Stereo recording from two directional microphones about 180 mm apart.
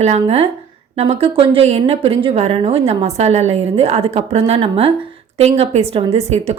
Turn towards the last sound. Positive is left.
turn(degrees=-35)  # may be behind; listen again after turning